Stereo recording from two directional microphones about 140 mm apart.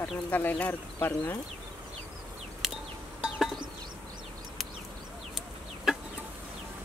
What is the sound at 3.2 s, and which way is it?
Music, centre (ahead or behind).